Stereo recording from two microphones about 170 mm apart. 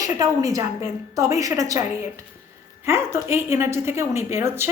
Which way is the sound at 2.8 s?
15° right (ahead or behind).